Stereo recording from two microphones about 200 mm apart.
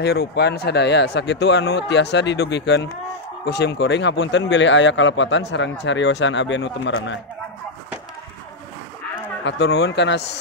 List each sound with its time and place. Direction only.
0.0 s speech: 55° left (ahead or behind)
9.4 s speech: 60° left (ahead or behind)